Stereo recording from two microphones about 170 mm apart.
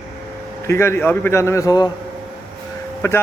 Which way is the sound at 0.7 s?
15° left (ahead or behind).